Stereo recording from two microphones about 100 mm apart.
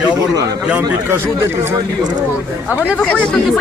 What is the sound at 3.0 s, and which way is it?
Speech, 10° left (ahead or behind).